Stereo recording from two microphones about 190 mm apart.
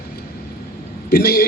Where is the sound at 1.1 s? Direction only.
50° left (ahead or behind).